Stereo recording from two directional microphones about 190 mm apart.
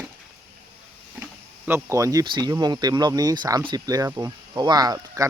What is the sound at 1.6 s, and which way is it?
Speech, 15° right (ahead or behind).